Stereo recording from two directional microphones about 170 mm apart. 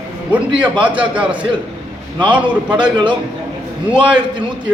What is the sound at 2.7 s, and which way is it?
Speech, 25° right (ahead or behind).